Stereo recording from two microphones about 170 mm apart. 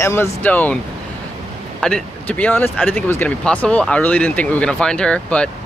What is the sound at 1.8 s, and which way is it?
Speech, 5° left (ahead or behind).